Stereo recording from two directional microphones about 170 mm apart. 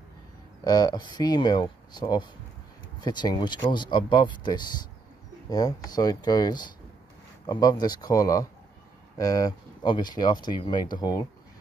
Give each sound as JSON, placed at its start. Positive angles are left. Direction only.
{"t": 0.7, "sound": "speech", "side_deg": 25}